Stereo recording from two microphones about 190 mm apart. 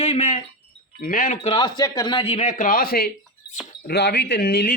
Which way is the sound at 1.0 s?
45° left (ahead or behind).